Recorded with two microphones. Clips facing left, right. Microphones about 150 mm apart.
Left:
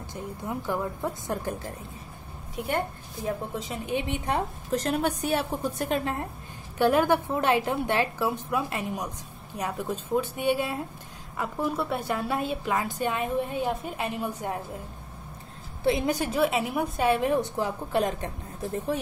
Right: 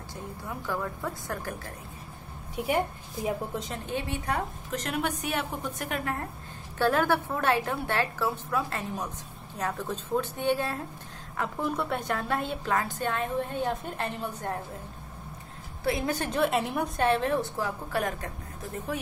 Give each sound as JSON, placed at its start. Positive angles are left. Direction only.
{"t": 0.1, "sound": "a woman's voice", "side_deg": 20}
{"t": 2.5, "sound": "a woman's voice", "side_deg": -5}
{"t": 3.5, "sound": "a woman's voice", "side_deg": 5}
{"t": 3.8, "sound": "a woman's voice", "side_deg": 15}
{"t": 4.3, "sound": "a woman's voice", "side_deg": 35}
{"t": 15.8, "sound": "a woman's voice", "side_deg": 20}